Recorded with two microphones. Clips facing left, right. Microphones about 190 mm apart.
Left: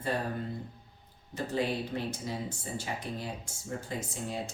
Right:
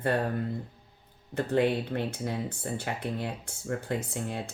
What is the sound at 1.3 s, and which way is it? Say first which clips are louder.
Speech: right 6 dB; 60° right (ahead or behind).